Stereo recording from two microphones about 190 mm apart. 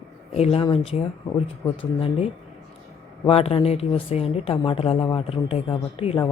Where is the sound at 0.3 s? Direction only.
35° left (ahead or behind).